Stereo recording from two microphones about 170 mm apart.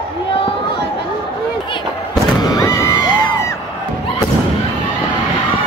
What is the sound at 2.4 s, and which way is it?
Music, 25° left (ahead or behind).